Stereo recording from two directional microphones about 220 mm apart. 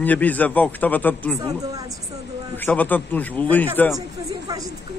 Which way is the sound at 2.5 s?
10° left (ahead or behind).